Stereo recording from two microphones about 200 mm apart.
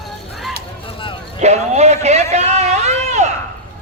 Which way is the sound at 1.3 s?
35° right (ahead or behind).